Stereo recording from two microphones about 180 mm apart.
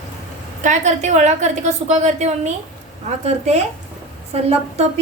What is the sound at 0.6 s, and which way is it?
A woman's voice, 40° right (ahead or behind).